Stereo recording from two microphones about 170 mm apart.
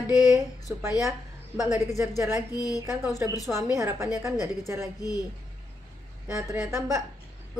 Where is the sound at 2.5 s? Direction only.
20° left (ahead or behind).